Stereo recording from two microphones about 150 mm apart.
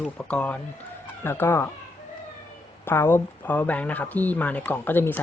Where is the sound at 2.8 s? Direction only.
15° left (ahead or behind).